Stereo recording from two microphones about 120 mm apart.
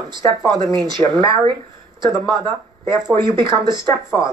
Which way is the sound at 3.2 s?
40° right (ahead or behind).